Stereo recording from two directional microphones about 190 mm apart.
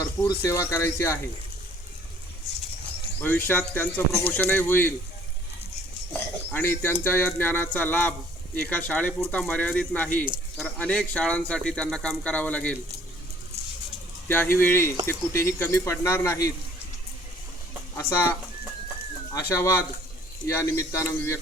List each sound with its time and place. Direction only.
0.0 s speech: 15° left (ahead or behind)
3.2 s speech: 10° left (ahead or behind)
6.1 s speech: 10° left (ahead or behind)
14.3 s speech: 10° left (ahead or behind)
19.3 s speech: 15° left (ahead or behind)